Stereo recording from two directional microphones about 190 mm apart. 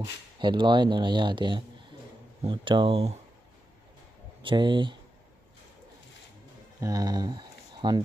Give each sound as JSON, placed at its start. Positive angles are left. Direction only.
{"t": 0.0, "sound": "speech", "side_deg": -25}
{"t": 4.4, "sound": "speech", "side_deg": -25}
{"t": 6.8, "sound": "speech", "side_deg": -20}